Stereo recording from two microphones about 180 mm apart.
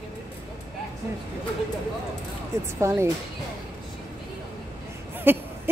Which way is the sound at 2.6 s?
15° right (ahead or behind).